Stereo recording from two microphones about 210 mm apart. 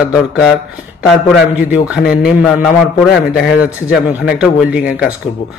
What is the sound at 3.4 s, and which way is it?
Speech, 50° left (ahead or behind).